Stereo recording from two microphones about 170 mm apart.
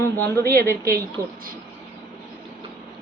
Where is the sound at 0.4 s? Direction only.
60° right (ahead or behind).